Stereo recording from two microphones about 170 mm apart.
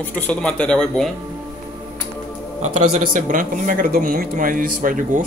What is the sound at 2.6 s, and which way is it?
A man's voice, 45° right (ahead or behind).